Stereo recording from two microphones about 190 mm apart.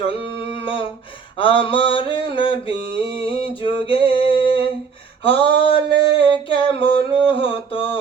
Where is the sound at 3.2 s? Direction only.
30° left (ahead or behind).